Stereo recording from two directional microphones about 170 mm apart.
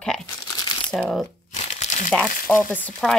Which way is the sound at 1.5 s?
40° left (ahead or behind).